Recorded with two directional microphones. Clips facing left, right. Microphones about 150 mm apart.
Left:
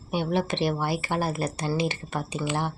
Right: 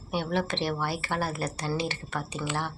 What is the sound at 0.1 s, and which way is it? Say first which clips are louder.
Speech: left 3 dB; 15° left (ahead or behind).